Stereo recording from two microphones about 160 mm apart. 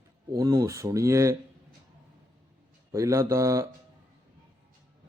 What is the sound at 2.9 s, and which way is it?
Speech, 20° right (ahead or behind).